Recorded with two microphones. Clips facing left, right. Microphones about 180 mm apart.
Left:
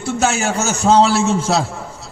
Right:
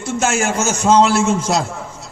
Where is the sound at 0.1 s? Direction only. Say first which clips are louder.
Even; 35° left (ahead or behind).